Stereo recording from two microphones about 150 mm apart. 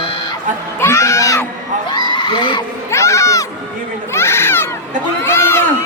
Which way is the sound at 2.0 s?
30° left (ahead or behind).